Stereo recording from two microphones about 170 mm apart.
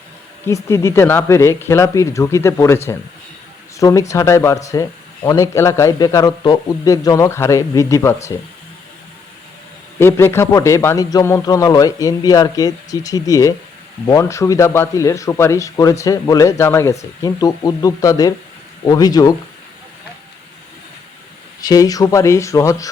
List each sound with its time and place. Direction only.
0.4 s a man's voice: 15° left (ahead or behind)
10.0 s a man's voice: 15° left (ahead or behind)
21.6 s a man's voice: 20° left (ahead or behind)